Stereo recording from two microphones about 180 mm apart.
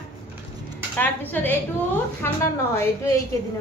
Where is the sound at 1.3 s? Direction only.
10° left (ahead or behind).